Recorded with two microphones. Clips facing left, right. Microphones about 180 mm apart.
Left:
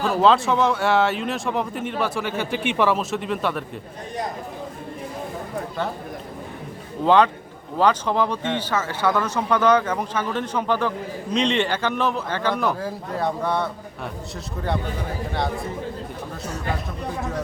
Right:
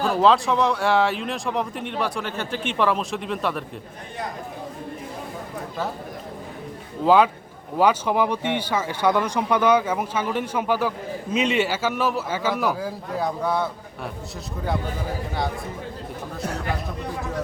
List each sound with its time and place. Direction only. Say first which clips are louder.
0.2 s speech: left 1 dB; centre (ahead or behind)
7.0 s speech: even; 5° right (ahead or behind)